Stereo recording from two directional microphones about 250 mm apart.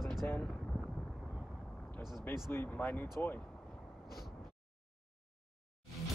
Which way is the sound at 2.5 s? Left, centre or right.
Centre.